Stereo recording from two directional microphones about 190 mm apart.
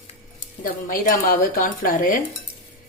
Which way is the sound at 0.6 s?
50° left (ahead or behind).